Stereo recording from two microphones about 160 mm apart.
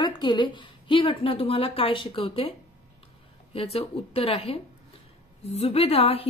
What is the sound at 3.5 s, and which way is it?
A woman's voice, 40° left (ahead or behind).